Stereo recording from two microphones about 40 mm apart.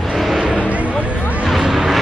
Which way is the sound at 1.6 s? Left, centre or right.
Centre.